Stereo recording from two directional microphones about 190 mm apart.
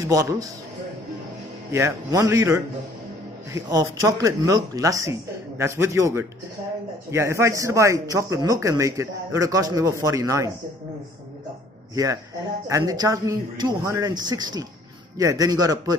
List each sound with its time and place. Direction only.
0.1 s a man's voice: 15° right (ahead or behind)
1.7 s a man's voice: 15° right (ahead or behind)
11.9 s a man's voice: 15° right (ahead or behind)